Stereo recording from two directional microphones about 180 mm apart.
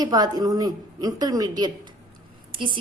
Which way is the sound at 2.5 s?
25° right (ahead or behind).